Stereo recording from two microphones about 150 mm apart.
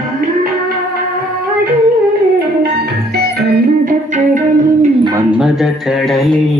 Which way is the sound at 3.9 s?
60° right (ahead or behind).